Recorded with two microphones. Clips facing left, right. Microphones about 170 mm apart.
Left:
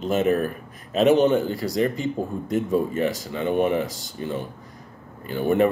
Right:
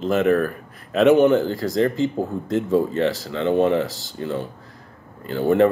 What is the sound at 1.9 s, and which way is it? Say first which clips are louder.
Speech: right 4 dB; 20° right (ahead or behind).